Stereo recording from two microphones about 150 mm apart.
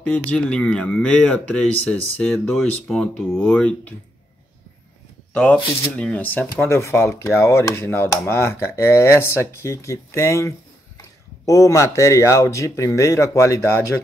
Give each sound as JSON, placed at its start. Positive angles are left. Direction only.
{"t": 0.0, "sound": "speech", "side_deg": 5}
{"t": 5.3, "sound": "speech", "side_deg": 10}